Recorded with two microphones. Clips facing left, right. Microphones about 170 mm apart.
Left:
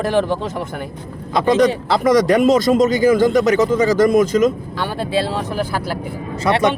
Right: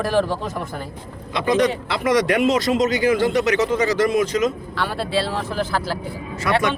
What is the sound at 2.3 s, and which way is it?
A man's voice, 45° left (ahead or behind).